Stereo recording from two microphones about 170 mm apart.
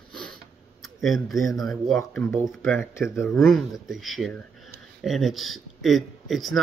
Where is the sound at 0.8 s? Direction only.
Centre (ahead or behind).